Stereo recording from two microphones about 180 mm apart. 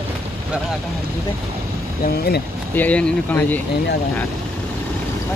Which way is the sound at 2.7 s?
10° left (ahead or behind).